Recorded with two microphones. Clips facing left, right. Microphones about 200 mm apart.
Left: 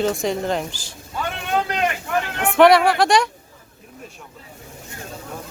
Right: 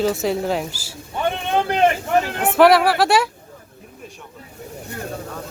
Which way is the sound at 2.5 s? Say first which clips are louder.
Even; 5° right (ahead or behind).